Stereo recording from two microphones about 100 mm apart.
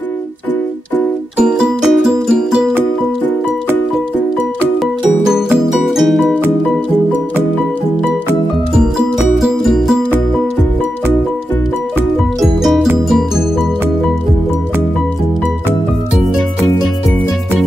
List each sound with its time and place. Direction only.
1.4 s music: 5° right (ahead or behind)
5.7 s music: centre (ahead or behind)
9.4 s music: centre (ahead or behind)